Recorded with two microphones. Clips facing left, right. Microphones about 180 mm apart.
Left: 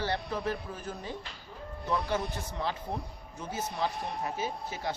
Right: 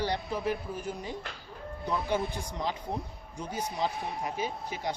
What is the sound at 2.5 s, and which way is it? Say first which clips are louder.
Speech: right 1 dB; 15° right (ahead or behind).